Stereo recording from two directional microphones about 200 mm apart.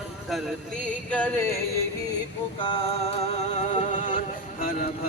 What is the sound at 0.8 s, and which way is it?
Music, 10° left (ahead or behind).